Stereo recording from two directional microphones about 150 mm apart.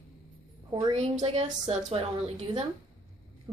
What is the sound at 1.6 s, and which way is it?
Speech, 45° right (ahead or behind).